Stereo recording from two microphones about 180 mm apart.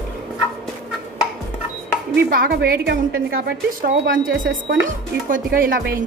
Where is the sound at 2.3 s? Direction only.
60° right (ahead or behind); by 4.8 s 90° right.